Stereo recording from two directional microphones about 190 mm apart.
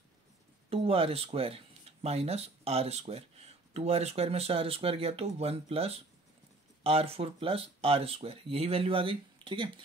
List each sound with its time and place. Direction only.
0.7 s speech: 30° right (ahead or behind)